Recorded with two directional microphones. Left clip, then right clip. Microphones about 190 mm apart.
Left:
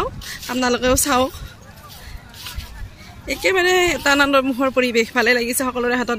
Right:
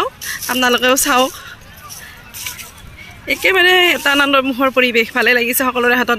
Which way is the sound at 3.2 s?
5° left (ahead or behind).